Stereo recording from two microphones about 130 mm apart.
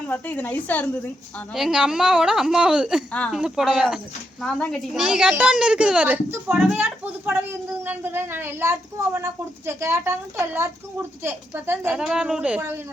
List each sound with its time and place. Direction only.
0.1 s a woman's voice: 15° left (ahead or behind)
1.5 s a woman's voice: 5° right (ahead or behind)
3.1 s a woman's voice: 10° left (ahead or behind)
3.3 s a woman's voice: 5° right (ahead or behind)
4.9 s a woman's voice: 5° right (ahead or behind)